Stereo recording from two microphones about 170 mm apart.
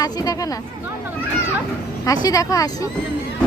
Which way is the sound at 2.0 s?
20° left (ahead or behind).